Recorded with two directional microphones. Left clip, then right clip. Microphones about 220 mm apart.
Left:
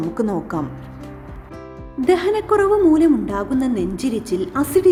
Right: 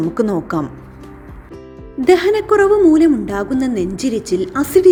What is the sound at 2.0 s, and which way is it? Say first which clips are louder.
A woman's voice: right 5 dB; 15° right (ahead or behind).